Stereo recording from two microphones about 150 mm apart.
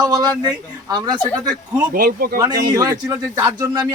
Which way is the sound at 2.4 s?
25° right (ahead or behind).